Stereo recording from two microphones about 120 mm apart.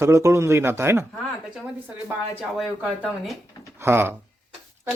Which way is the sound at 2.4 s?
Centre (ahead or behind).